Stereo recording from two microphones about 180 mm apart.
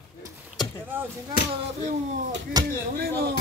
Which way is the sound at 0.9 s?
10° right (ahead or behind).